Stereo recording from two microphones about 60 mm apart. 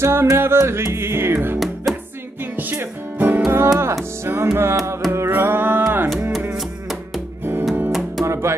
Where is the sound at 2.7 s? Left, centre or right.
Right.